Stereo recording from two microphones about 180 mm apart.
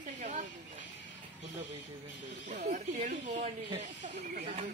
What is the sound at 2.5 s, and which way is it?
Speech, 40° right (ahead or behind).